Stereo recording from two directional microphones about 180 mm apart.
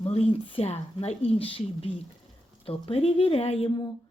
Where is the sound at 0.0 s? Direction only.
35° left (ahead or behind).